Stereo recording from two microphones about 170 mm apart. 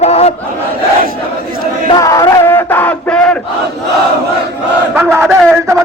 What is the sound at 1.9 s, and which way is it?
Chant, 20° left (ahead or behind).